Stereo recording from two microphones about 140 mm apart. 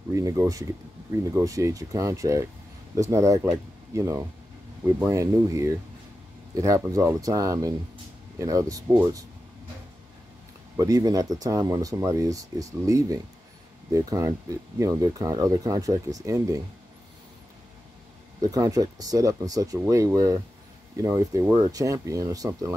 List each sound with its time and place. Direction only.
0.1 s speech: 25° right (ahead or behind)
10.8 s speech: 25° right (ahead or behind)
18.4 s speech: 25° right (ahead or behind)